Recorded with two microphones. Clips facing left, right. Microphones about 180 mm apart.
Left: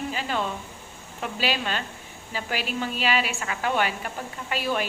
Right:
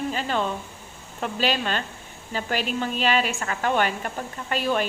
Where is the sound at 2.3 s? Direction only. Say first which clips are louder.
Right 3 dB; 45° right (ahead or behind).